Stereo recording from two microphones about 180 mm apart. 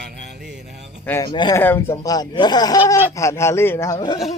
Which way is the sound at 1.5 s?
10° left (ahead or behind).